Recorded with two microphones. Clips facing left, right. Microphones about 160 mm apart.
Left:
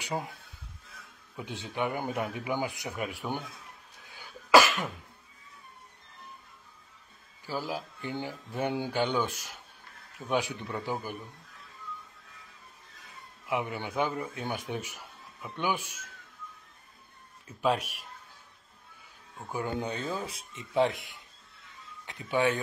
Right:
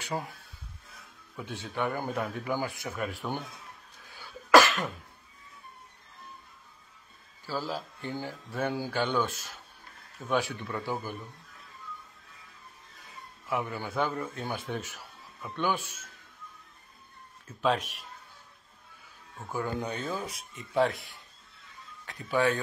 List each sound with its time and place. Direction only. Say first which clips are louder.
0.0 s speech: even; 20° left (ahead or behind)
4.1 s cough: right 1 dB; 15° left (ahead or behind)
7.4 s speech: even; 15° left (ahead or behind)
13.5 s speech: even; 15° left (ahead or behind)
17.6 s speech: even; 10° left (ahead or behind)
19.5 s speech: even; 25° left (ahead or behind)
20.7 s speech: even; 20° left (ahead or behind)